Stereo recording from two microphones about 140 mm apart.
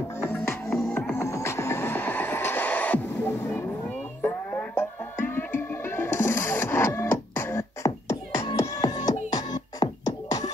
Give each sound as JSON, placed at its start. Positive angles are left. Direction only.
{"t": 0.2, "sound": "music", "side_deg": 15}
{"t": 0.7, "sound": "music", "side_deg": 0}
{"t": 1.1, "sound": "music", "side_deg": 20}